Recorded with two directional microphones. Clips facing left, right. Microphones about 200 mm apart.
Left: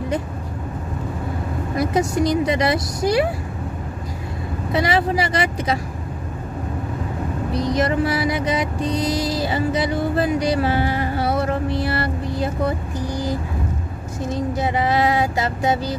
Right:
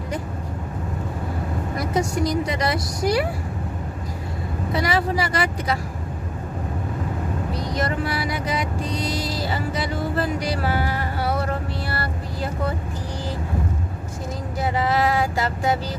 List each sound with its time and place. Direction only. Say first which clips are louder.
1.8 s music: left 4 dB; 25° left (ahead or behind)
4.7 s music: left 3 dB; 20° left (ahead or behind)
7.5 s music: left 7 dB; 20° left (ahead or behind)
11.7 s vehicle: left 6 dB; 20° left (ahead or behind)
14.3 s music: left 4 dB; 20° left (ahead or behind)